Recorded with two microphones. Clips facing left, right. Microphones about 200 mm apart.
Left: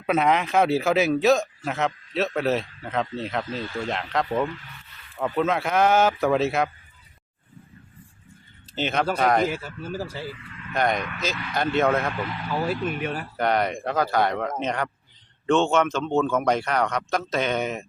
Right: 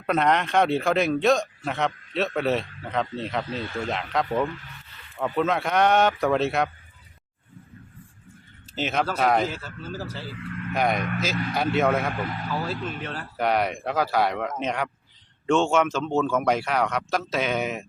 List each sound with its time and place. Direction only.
0.0 s speech: 5° left (ahead or behind)
8.7 s speech: centre (ahead or behind)
9.5 s speech: 10° left (ahead or behind)
10.4 s vehicle: 55° right (ahead or behind)
10.8 s speech: 5° right (ahead or behind)
12.2 s speech: 45° right (ahead or behind)
12.5 s speech: 15° left (ahead or behind)
13.3 s speech: 5° right (ahead or behind)